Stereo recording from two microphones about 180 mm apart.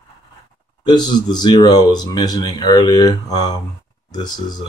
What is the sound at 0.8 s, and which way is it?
Speech, 25° left (ahead or behind).